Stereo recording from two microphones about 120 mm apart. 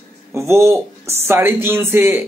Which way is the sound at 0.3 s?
20° right (ahead or behind).